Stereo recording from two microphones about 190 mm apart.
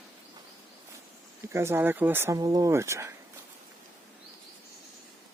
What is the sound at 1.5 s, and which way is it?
Speech, 15° right (ahead or behind).